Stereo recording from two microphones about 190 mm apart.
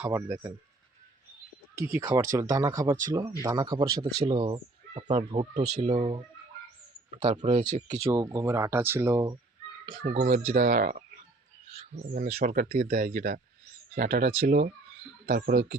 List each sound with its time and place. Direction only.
0.0 s speech: 10° right (ahead or behind)
1.7 s speech: 15° right (ahead or behind)
4.0 s speech: 30° right (ahead or behind)
8.1 s speech: 15° right (ahead or behind)
10.0 s speech: 40° right (ahead or behind)
12.1 s speech: 50° right (ahead or behind)